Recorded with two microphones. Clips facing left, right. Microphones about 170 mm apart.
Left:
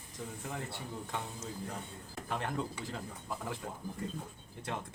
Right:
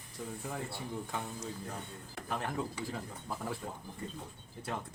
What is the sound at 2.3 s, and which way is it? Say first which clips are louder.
Speech: even; 5° right (ahead or behind).